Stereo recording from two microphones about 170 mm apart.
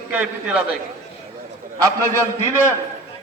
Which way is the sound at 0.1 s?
10° right (ahead or behind).